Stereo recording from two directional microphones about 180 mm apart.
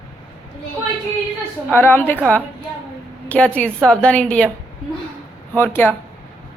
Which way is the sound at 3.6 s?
5° left (ahead or behind).